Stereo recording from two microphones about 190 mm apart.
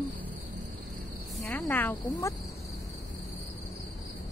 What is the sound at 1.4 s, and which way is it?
Speech, 10° left (ahead or behind).